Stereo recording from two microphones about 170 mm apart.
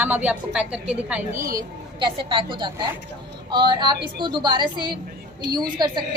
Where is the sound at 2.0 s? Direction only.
30° right (ahead or behind).